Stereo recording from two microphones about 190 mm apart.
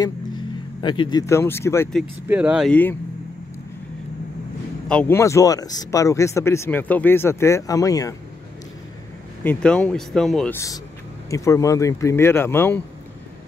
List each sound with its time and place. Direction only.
0.7 s speech: 25° left (ahead or behind)
2.2 s speech: 10° right (ahead or behind)
2.7 s speech: 10° left (ahead or behind)
4.8 s speech: 10° left (ahead or behind)
9.4 s speech: 5° left (ahead or behind)
11.2 s speech: 15° left (ahead or behind)